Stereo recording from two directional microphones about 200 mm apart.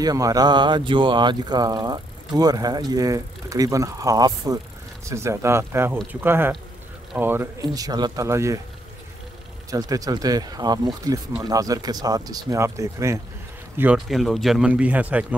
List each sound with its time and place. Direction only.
0.0 s speech: 20° right (ahead or behind)
9.7 s a man's voice: 15° right (ahead or behind)